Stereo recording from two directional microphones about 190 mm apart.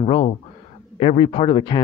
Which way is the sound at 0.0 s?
30° left (ahead or behind).